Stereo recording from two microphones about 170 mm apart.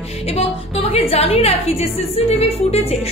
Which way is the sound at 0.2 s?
35° left (ahead or behind).